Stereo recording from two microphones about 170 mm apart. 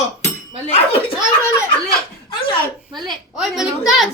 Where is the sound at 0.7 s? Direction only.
40° left (ahead or behind).